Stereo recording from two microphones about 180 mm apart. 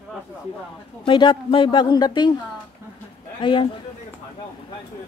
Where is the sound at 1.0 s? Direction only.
25° left (ahead or behind).